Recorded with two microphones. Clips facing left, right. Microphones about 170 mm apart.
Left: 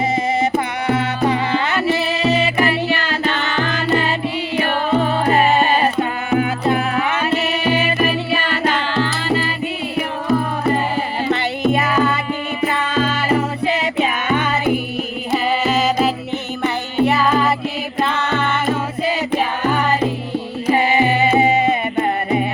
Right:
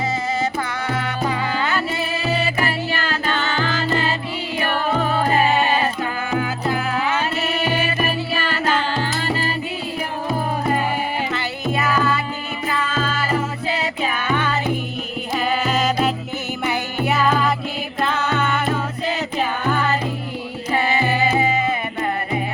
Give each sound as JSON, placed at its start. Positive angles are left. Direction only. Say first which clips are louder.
{"t": 0.9, "sound": "music", "louder": "left 7 dB", "side_deg": 20}
{"t": 6.0, "sound": "music", "louder": "left 5 dB", "side_deg": 25}
{"t": 11.7, "sound": "music", "louder": "left 1 dB", "side_deg": 25}
{"t": 14.3, "sound": "music", "louder": "left 5 dB", "side_deg": 15}
{"t": 15.6, "sound": "music", "louder": "left 3 dB", "side_deg": 0}
{"t": 20.7, "sound": "music", "louder": "left 3 dB", "side_deg": 20}